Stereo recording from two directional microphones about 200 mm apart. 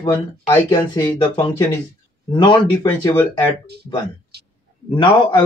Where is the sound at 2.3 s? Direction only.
20° left (ahead or behind).